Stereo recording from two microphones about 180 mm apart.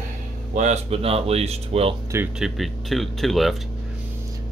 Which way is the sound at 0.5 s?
35° right (ahead or behind).